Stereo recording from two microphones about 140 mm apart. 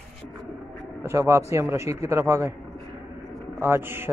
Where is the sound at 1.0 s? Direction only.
20° right (ahead or behind).